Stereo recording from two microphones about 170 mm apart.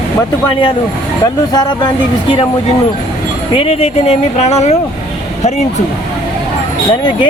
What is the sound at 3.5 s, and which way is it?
Speech, 35° left (ahead or behind).